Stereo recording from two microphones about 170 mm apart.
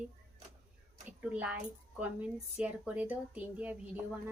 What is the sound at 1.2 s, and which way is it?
Speech, 10° right (ahead or behind).